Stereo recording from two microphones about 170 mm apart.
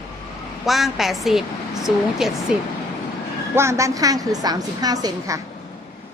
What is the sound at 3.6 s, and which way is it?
A woman's voice, 15° right (ahead or behind).